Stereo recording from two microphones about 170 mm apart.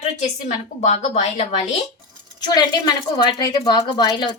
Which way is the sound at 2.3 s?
25° left (ahead or behind).